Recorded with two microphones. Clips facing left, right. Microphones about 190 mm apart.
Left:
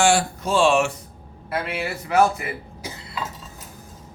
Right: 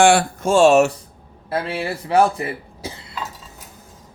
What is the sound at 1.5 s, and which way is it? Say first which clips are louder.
Speech: right 3 dB; 30° right (ahead or behind).